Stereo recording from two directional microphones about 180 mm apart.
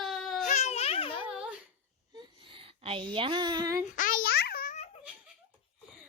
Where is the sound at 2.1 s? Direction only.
30° right (ahead or behind).